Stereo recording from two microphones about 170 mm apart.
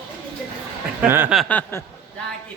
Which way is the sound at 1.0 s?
10° right (ahead or behind).